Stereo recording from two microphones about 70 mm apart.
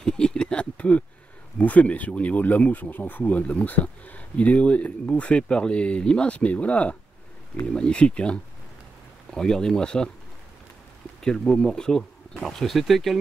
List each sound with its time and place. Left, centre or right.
0.0 s a sound: centre
1.6 s speech: left
11.2 s speech: centre